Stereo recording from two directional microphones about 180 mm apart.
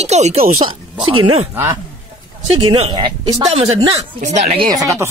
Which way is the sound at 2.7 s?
30° right (ahead or behind).